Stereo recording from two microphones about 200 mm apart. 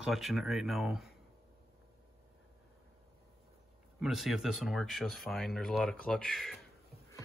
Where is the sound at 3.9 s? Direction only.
Centre (ahead or behind).